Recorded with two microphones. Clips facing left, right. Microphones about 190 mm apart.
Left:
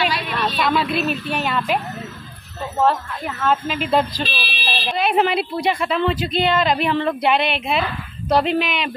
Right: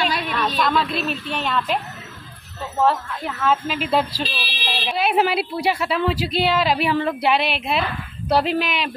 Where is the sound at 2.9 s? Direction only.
5° right (ahead or behind).